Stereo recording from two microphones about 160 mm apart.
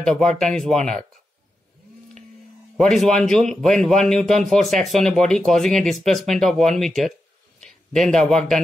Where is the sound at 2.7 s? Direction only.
Centre (ahead or behind).